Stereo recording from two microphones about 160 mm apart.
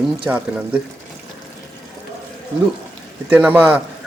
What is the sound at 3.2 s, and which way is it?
Speech, 10° right (ahead or behind).